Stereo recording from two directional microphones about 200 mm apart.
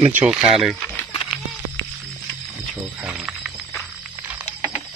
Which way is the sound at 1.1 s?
20° left (ahead or behind).